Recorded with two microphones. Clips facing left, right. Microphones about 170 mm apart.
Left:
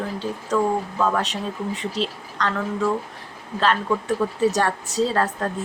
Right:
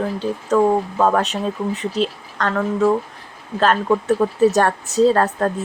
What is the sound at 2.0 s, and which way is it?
A woman's voice, 50° right (ahead or behind).